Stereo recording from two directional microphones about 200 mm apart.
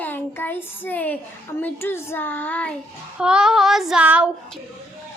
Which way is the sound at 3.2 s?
5° right (ahead or behind).